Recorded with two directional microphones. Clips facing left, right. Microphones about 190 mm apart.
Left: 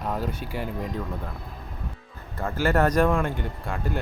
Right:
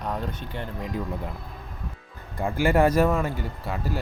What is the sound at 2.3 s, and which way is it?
Speech, 15° right (ahead or behind).